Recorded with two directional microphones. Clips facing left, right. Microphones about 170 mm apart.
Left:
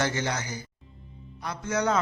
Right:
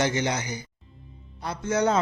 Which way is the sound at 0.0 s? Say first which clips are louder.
Right 3 dB; 15° right (ahead or behind).